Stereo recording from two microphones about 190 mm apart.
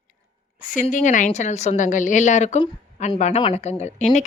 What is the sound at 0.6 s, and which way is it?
A woman's voice, 45° left (ahead or behind).